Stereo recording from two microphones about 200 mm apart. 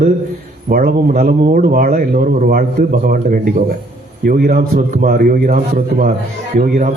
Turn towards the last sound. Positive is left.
turn(degrees=-45)  # may be behind; listen again after turning